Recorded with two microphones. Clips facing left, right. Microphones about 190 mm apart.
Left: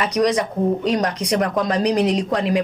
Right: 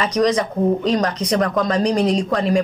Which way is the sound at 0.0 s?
15° left (ahead or behind).